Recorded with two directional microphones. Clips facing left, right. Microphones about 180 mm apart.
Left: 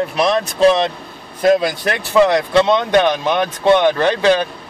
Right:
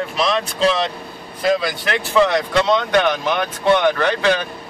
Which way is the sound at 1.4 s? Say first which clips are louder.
Left 5 dB; 50° left (ahead or behind).